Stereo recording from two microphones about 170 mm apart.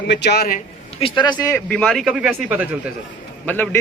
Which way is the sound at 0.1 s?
85° left.